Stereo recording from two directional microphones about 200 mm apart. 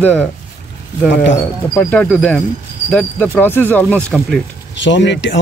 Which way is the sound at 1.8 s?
10° left (ahead or behind).